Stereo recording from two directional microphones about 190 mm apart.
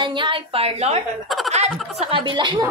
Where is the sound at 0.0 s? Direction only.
25° right (ahead or behind).